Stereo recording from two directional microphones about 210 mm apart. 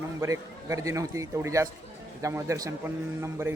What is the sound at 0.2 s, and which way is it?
Speech, 15° right (ahead or behind).